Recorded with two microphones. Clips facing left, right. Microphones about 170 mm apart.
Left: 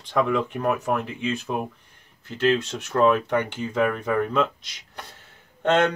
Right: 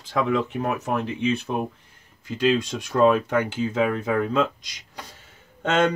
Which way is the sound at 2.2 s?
10° right (ahead or behind).